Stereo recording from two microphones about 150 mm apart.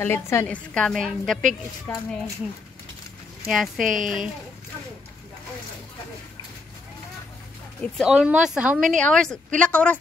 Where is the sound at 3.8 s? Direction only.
60° right (ahead or behind).